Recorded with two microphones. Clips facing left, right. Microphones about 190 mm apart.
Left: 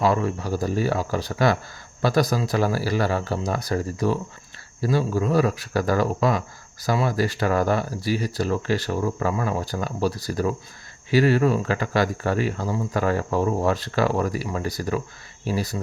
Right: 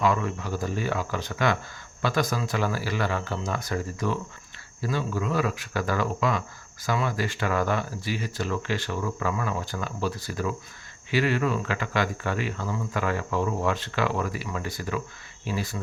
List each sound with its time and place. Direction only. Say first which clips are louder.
0.0 s speech: left 3 dB; 35° left (ahead or behind)